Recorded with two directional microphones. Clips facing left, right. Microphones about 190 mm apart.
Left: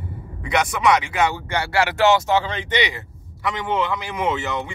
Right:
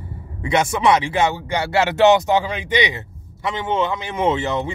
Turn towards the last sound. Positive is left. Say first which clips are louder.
# right 4 dB
turn(degrees=-25)  # may be behind; listen again after turning